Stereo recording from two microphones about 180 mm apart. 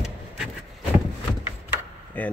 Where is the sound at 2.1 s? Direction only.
10° left (ahead or behind).